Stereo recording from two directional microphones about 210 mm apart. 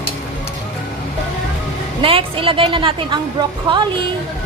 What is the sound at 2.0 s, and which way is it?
A woman's voice, 25° right (ahead or behind).